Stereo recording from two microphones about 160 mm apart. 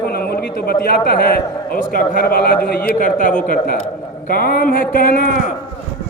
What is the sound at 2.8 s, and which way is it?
A man's voice, 55° left (ahead or behind).